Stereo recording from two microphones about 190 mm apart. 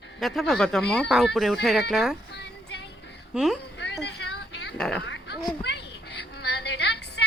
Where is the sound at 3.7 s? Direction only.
70° left (ahead or behind).